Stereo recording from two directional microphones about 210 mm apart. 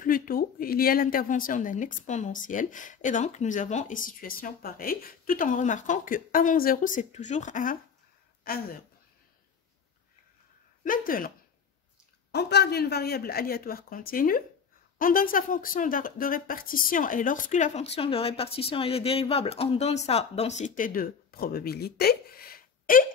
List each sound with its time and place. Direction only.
0.0 s speech: 40° left (ahead or behind)
10.8 s speech: 40° left (ahead or behind)
12.4 s speech: 50° left (ahead or behind)